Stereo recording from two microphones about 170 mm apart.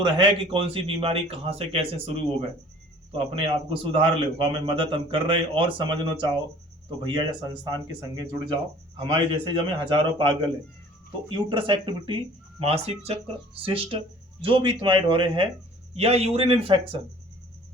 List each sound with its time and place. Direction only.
0.0 s a man's voice: 30° right (ahead or behind)